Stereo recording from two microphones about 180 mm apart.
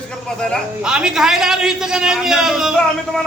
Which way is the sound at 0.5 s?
5° right (ahead or behind).